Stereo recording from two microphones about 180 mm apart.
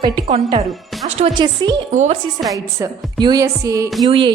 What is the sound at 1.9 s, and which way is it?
Speech, 40° right (ahead or behind).